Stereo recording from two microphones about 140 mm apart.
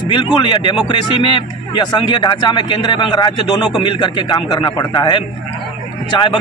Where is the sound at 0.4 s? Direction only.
35° left (ahead or behind).